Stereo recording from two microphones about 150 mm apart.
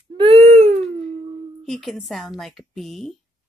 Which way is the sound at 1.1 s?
40° right (ahead or behind).